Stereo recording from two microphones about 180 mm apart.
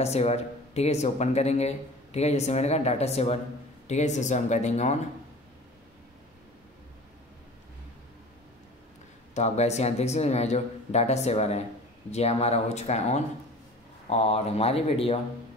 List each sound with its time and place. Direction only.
0.0 s speech: 35° left (ahead or behind)
9.3 s speech: 40° left (ahead or behind)